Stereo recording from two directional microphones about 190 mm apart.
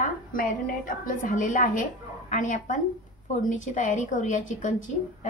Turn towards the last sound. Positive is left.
turn(degrees=40)  # may be behind; listen again after turning